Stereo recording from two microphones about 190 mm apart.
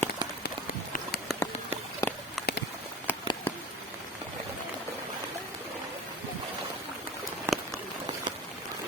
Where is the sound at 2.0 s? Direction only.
15° left (ahead or behind).